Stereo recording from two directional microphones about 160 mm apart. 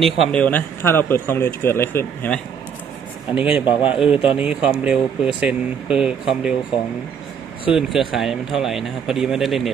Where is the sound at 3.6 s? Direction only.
30° left (ahead or behind).